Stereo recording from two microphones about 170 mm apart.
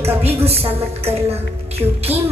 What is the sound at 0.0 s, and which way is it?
A woman's voice, 35° right (ahead or behind).